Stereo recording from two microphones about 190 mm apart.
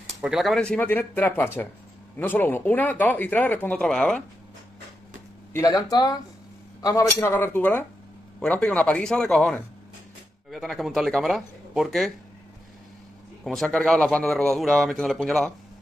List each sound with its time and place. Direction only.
0.2 s speech: centre (ahead or behind)
5.5 s a man's voice: 20° left (ahead or behind); by 12.1 s centre (ahead or behind)
13.4 s a man's voice: 5° left (ahead or behind)